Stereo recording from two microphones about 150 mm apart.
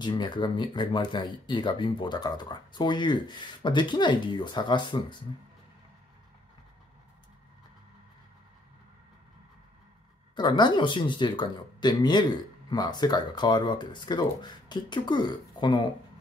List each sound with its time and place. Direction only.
0.0 s speech: 30° left (ahead or behind)
10.3 s speech: 30° left (ahead or behind)